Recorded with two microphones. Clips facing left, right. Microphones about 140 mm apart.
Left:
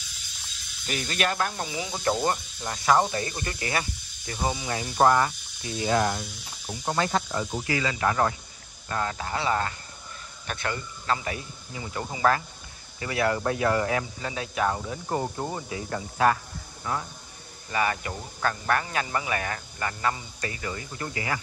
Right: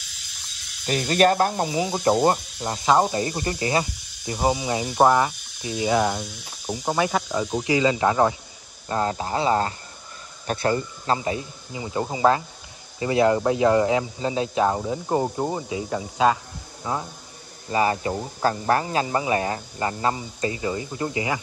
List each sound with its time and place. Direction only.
0.8 s speech: 35° right (ahead or behind); by 21.4 s 20° right (ahead or behind)